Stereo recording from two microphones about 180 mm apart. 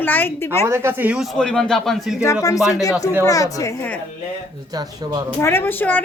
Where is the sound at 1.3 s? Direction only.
5° left (ahead or behind).